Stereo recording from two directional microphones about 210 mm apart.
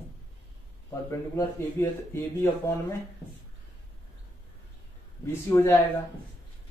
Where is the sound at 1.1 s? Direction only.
15° left (ahead or behind).